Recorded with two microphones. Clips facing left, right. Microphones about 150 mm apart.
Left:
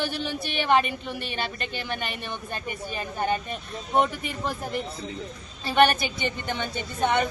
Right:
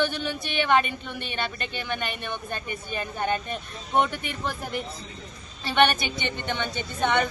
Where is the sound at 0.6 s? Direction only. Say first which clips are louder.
Even; centre (ahead or behind).